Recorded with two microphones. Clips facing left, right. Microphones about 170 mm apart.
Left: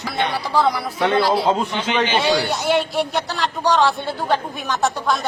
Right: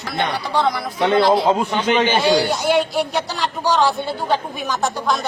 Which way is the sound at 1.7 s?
45° right (ahead or behind).